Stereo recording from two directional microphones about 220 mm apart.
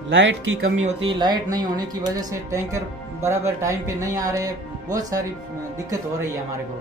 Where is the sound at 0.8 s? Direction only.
25° right (ahead or behind).